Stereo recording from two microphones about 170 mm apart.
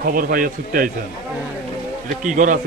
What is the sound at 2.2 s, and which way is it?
Speech, 50° right (ahead or behind).